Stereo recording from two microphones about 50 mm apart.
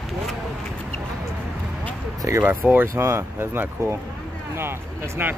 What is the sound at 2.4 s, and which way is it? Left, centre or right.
Speech, right.